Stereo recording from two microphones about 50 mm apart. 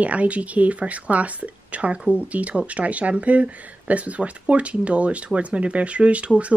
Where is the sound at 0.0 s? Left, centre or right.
Right.